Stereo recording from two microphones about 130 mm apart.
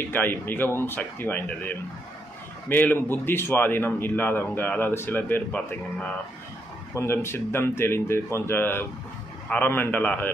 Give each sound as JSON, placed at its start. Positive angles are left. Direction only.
{"t": 0.0, "sound": "a man's voice", "side_deg": 15}